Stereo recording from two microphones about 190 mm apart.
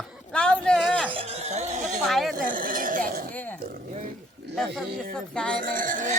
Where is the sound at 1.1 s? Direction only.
30° right (ahead or behind).